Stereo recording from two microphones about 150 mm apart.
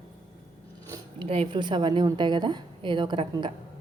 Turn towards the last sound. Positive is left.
turn(degrees=-30)  # may be behind; listen again after turning